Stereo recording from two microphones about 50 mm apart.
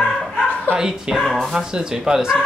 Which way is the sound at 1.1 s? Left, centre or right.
Centre.